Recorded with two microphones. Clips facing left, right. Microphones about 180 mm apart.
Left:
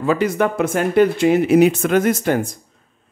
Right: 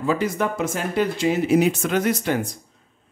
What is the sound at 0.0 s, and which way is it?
Speech, 70° left (ahead or behind).